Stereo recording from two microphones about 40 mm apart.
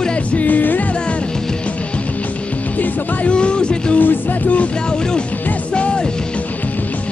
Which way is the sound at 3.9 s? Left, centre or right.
Left.